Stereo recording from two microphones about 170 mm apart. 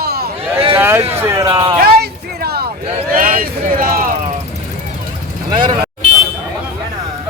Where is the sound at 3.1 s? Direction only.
55° right (ahead or behind).